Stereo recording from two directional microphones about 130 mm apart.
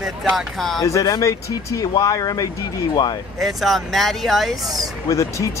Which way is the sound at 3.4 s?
Centre (ahead or behind).